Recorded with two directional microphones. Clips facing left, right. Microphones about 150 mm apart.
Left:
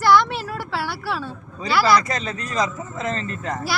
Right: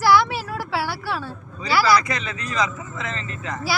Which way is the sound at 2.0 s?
40° left (ahead or behind).